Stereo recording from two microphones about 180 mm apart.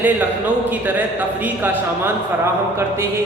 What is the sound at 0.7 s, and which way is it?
A man's voice, 10° right (ahead or behind).